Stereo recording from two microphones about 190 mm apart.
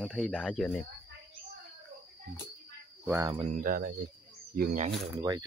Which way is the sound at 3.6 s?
50° right (ahead or behind).